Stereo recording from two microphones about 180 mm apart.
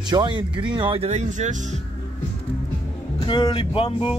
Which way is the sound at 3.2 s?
25° left (ahead or behind).